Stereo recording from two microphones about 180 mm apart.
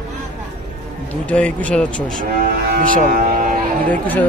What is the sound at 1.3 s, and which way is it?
Speech, 5° left (ahead or behind).